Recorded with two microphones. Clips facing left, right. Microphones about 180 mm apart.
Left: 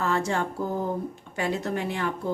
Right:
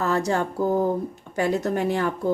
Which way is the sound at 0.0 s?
40° right (ahead or behind).